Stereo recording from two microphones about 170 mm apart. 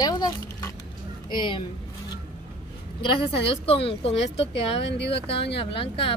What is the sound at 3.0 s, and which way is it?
A woman's voice, 30° left (ahead or behind).